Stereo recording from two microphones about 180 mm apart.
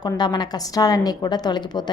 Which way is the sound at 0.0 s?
20° left (ahead or behind).